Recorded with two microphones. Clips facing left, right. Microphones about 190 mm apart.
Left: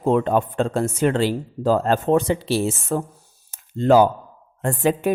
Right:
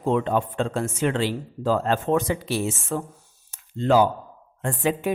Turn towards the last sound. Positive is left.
turn(degrees=45)  # may be behind; listen again after turning